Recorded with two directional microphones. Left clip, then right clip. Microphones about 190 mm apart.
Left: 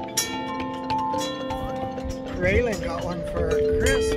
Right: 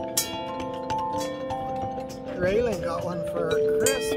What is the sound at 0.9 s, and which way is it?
Music, 20° right (ahead or behind).